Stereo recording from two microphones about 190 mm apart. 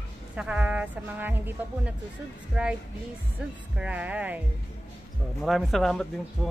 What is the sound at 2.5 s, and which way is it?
Speech, 5° right (ahead or behind).